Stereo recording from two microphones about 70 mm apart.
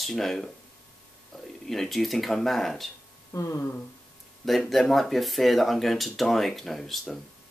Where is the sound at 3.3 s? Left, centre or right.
Left.